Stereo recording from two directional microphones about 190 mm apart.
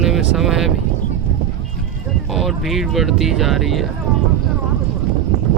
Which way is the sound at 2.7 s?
Centre (ahead or behind).